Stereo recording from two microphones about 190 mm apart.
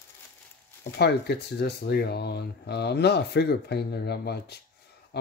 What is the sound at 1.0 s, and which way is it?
Speech, 60° left (ahead or behind).